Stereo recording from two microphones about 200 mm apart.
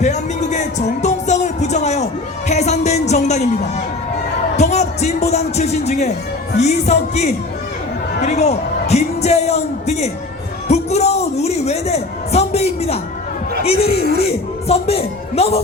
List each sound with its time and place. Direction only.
0.0 s music: 35° left (ahead or behind)
6.6 s speech: 35° left (ahead or behind)
10.7 s a sound: 35° left (ahead or behind)
13.7 s speech: 30° left (ahead or behind)